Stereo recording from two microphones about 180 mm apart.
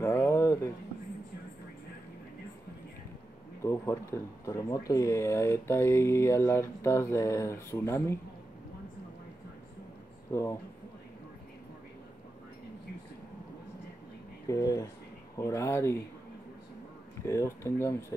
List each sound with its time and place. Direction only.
0.0 s a sound: 10° left (ahead or behind)
3.6 s speech: 15° left (ahead or behind)
10.3 s speech: 15° left (ahead or behind)
14.5 s speech: 20° left (ahead or behind)
17.3 s speech: 15° left (ahead or behind)